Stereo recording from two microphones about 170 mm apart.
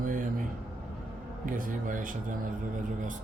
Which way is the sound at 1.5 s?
50° right (ahead or behind).